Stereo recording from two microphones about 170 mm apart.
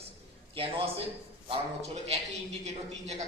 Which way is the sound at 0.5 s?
35° right (ahead or behind).